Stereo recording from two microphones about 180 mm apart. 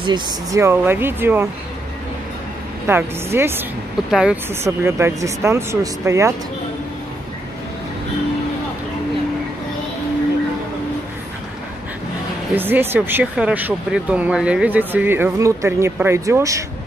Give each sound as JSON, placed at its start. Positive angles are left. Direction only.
{"t": 0.0, "sound": "speech", "side_deg": -25}
{"t": 0.6, "sound": "speech", "side_deg": -15}
{"t": 2.9, "sound": "speech", "side_deg": -10}
{"t": 4.6, "sound": "speech", "side_deg": -15}
{"t": 12.5, "sound": "speech", "side_deg": -10}